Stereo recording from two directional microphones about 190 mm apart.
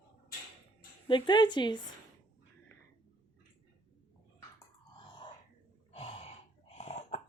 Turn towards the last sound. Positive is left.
turn(degrees=35)  # may be behind; listen again after turning